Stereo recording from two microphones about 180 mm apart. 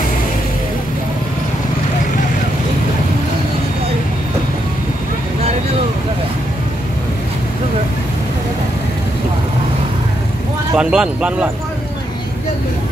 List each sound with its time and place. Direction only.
10.7 s speech: 5° right (ahead or behind)